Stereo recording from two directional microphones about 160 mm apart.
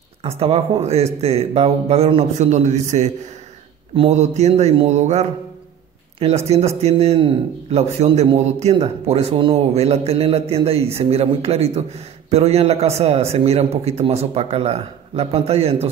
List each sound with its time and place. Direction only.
0.2 s speech: 40° right (ahead or behind)